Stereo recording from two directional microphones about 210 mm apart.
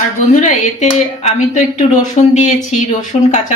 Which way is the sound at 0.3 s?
35° left (ahead or behind).